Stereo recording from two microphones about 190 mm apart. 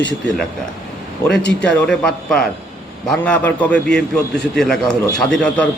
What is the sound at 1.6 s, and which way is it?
A man's voice, 5° left (ahead or behind).